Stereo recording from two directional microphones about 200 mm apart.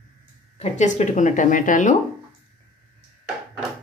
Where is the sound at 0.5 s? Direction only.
35° left (ahead or behind).